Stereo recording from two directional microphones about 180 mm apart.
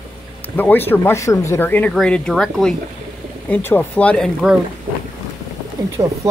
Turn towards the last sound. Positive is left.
turn(degrees=-25)  # may be behind; listen again after turning